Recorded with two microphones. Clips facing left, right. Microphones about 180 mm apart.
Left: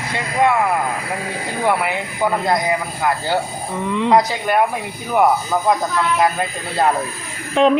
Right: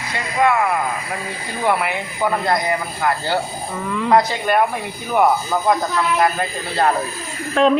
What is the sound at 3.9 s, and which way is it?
Speech, 25° left (ahead or behind).